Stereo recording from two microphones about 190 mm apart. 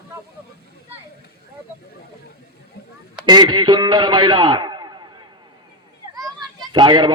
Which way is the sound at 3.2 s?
25° right (ahead or behind).